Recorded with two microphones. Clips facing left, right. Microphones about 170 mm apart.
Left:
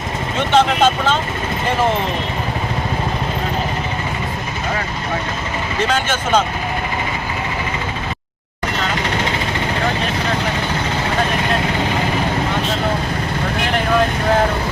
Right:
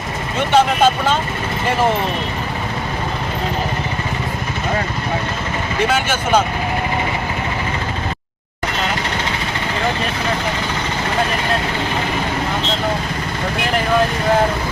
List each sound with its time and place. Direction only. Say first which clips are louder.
0.5 s speech: even; 10° right (ahead or behind)
5.9 s speech: even; 10° right (ahead or behind)